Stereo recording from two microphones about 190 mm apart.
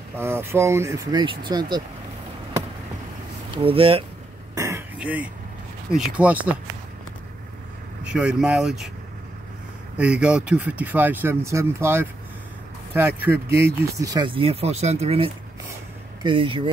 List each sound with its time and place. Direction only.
0.2 s speech: 15° right (ahead or behind)
3.5 s speech: 30° right (ahead or behind)
4.6 s throat clearing: 15° right (ahead or behind)
5.9 s speech: 5° right (ahead or behind)
8.0 s speech: 5° right (ahead or behind)
9.9 s speech: 5° right (ahead or behind); by 16.7 s 25° right (ahead or behind)